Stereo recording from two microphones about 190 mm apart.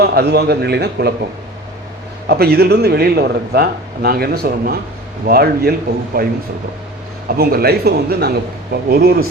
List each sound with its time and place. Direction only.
0.0 s speech: 60° right (ahead or behind)
2.2 s speech: 60° right (ahead or behind)